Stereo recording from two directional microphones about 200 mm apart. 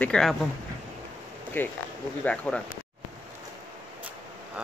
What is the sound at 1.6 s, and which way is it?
Speech, 10° left (ahead or behind).